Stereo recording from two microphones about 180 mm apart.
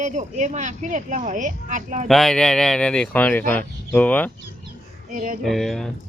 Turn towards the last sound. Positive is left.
turn(degrees=0)  # may be behind; listen again after turning